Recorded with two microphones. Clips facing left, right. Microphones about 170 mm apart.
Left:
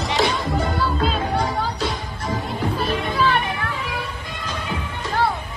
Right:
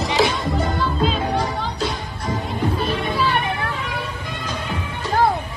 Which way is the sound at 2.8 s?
Centre (ahead or behind).